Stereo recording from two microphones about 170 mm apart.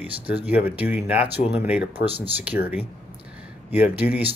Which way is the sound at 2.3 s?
10° right (ahead or behind).